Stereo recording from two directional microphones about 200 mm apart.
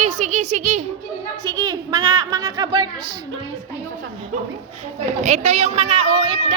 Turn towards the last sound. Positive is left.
turn(degrees=-25)  # may be behind; listen again after turning